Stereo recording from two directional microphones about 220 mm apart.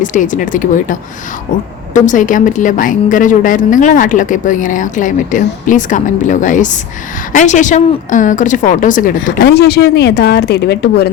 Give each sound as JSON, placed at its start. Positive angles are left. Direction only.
{"t": 0.0, "sound": "a woman's voice", "side_deg": 35}